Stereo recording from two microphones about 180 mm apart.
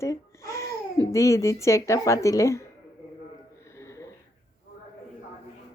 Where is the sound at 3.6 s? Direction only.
15° left (ahead or behind).